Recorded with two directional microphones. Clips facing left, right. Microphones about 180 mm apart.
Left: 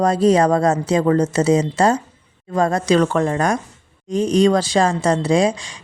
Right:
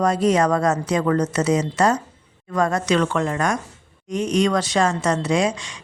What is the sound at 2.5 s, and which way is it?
A woman's voice, 30° left (ahead or behind).